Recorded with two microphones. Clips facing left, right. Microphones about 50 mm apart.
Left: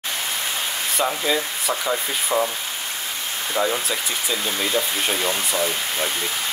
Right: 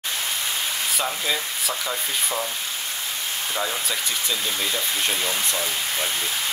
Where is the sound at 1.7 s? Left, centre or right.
Left.